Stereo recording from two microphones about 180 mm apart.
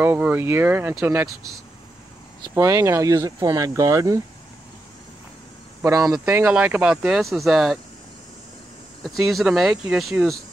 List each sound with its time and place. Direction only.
0.0 s speech: 10° right (ahead or behind)
2.5 s speech: 15° right (ahead or behind)
5.8 s speech: 20° right (ahead or behind); by 7.8 s centre (ahead or behind)
9.0 s speech: centre (ahead or behind)